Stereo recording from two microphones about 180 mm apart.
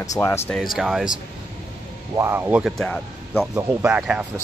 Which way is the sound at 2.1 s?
15° right (ahead or behind).